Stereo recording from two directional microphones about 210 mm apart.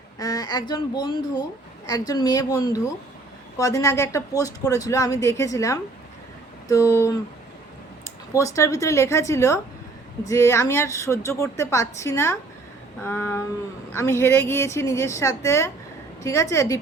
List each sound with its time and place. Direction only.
0.2 s speech: 15° left (ahead or behind)